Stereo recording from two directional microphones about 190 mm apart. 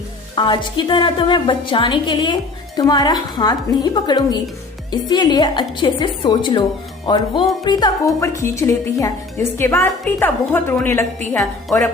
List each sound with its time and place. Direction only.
0.3 s a woman's voice: 25° left (ahead or behind)
11.3 s speech: centre (ahead or behind)